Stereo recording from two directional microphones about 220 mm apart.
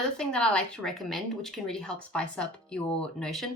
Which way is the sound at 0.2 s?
5° left (ahead or behind).